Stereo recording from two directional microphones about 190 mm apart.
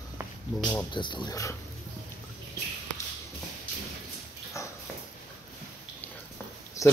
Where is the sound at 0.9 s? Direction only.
25° left (ahead or behind).